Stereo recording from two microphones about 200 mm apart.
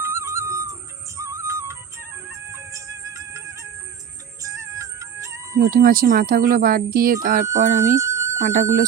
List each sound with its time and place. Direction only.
0.0 s music: 15° right (ahead or behind)
4.4 s music: 15° right (ahead or behind)
5.6 s speech: 45° right (ahead or behind)
7.9 s a sound: 15° right (ahead or behind)
8.4 s speech: 35° right (ahead or behind)